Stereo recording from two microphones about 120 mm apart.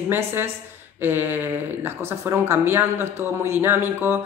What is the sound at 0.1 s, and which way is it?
A woman's voice, 20° right (ahead or behind).